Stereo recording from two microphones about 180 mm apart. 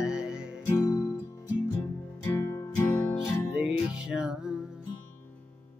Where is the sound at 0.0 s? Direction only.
5° right (ahead or behind).